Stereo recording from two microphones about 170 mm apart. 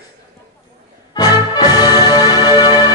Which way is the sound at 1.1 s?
25° left (ahead or behind).